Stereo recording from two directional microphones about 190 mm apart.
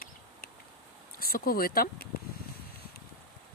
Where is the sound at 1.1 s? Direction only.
50° left (ahead or behind).